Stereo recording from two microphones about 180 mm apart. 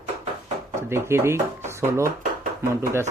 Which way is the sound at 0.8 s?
15° right (ahead or behind).